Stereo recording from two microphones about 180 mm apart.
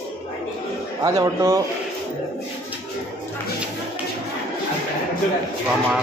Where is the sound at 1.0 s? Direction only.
20° right (ahead or behind).